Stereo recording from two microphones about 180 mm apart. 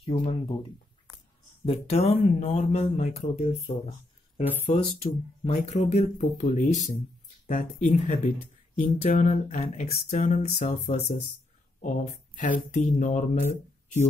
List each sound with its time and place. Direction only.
0.0 s speech: 30° left (ahead or behind)
1.7 s speech: 35° left (ahead or behind)